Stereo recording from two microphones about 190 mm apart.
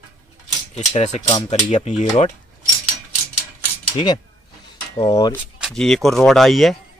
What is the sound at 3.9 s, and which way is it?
Speech, 25° left (ahead or behind).